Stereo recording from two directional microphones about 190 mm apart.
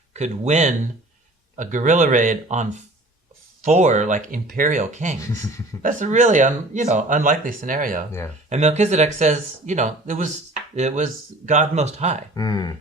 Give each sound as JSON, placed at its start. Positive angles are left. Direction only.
{"t": 0.1, "sound": "speech", "side_deg": -35}
{"t": 12.3, "sound": "speech", "side_deg": 20}